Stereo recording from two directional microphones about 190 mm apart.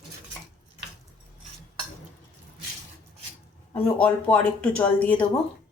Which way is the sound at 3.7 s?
5° left (ahead or behind).